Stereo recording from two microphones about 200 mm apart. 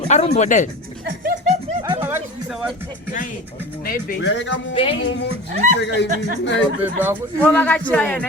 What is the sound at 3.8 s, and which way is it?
Speech, 50° left (ahead or behind).